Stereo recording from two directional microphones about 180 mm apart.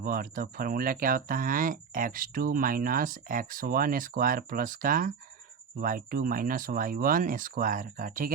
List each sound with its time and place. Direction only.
0.0 s speech: 50° right (ahead or behind)